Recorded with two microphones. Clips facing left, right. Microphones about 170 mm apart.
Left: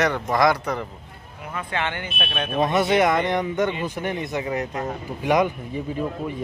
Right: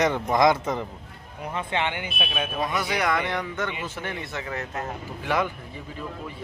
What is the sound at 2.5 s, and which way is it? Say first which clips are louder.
Speech: left 10 dB; 25° left (ahead or behind).